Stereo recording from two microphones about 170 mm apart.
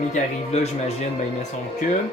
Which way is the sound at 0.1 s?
40° left (ahead or behind).